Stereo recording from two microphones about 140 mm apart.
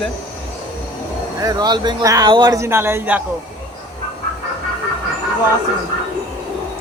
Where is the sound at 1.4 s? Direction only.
25° right (ahead or behind).